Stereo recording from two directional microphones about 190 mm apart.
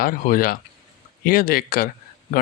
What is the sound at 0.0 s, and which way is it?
Speech, 50° left (ahead or behind).